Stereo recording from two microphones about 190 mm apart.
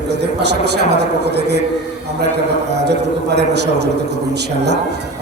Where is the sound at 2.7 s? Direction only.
60° right (ahead or behind).